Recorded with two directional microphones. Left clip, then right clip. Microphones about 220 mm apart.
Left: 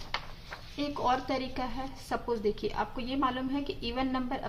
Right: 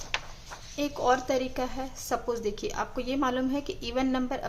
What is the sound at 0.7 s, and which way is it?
A woman's voice, 20° right (ahead or behind).